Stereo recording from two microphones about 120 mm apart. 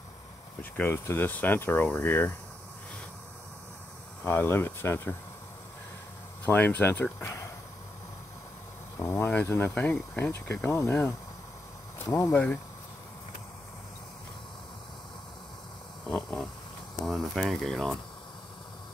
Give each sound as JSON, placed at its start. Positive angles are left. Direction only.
{"t": 0.6, "sound": "speech", "side_deg": 15}
{"t": 4.2, "sound": "speech", "side_deg": 20}
{"t": 6.4, "sound": "speech", "side_deg": 15}
{"t": 9.0, "sound": "speech", "side_deg": 20}
{"t": 12.1, "sound": "speech", "side_deg": 20}
{"t": 16.1, "sound": "a sound", "side_deg": 10}
{"t": 17.0, "sound": "speech", "side_deg": 0}